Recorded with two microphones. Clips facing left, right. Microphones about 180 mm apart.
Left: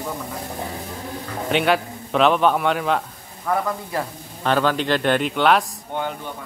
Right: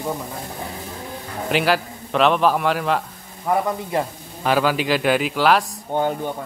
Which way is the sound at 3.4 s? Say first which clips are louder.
Right 2 dB; 20° right (ahead or behind).